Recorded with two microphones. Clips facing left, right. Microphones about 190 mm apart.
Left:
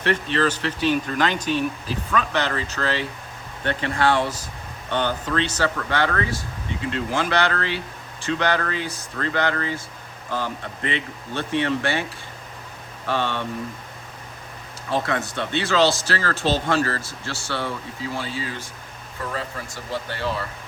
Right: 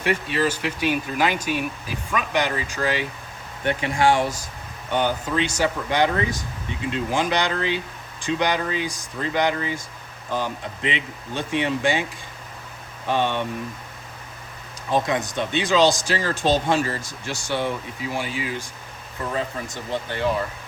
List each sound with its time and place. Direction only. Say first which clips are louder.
0.0 s speech: left 1 dB; 10° right (ahead or behind)
13.1 s speech: right 2 dB; 15° right (ahead or behind)
14.8 s speech: right 2 dB; 15° right (ahead or behind)